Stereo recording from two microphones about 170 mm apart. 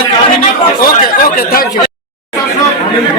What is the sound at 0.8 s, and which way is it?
Chatter, 60° left (ahead or behind).